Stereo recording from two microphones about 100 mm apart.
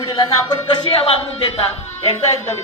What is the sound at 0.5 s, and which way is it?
Speech, 50° left (ahead or behind).